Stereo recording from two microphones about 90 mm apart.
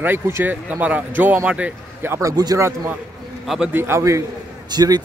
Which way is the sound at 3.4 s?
5° right (ahead or behind).